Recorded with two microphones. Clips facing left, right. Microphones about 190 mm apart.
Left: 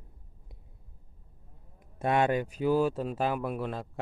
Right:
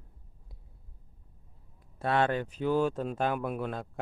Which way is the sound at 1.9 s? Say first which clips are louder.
Left 2 dB; 15° left (ahead or behind).